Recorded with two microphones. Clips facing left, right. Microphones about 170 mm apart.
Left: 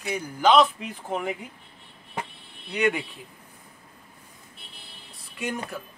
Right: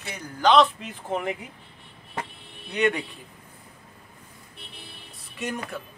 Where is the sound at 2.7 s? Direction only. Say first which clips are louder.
Right 1 dB; 5° left (ahead or behind).